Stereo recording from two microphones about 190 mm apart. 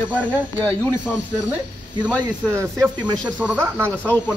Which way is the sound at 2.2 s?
15° right (ahead or behind).